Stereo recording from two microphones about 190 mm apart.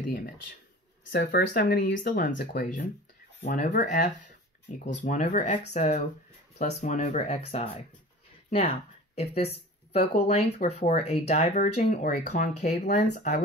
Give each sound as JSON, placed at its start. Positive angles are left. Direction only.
{"t": 1.1, "sound": "speech", "side_deg": 65}
{"t": 13.1, "sound": "speech", "side_deg": 40}